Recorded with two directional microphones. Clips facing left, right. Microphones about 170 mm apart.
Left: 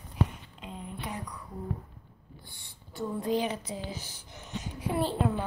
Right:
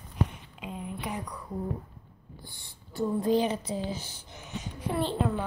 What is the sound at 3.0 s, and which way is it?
A woman's voice, 35° right (ahead or behind).